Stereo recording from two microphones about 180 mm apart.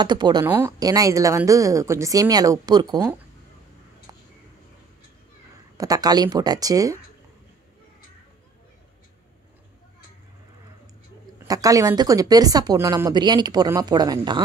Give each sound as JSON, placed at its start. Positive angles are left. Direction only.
{"t": 0.0, "sound": "speech", "side_deg": -25}
{"t": 5.8, "sound": "speech", "side_deg": -20}
{"t": 11.4, "sound": "speech", "side_deg": -20}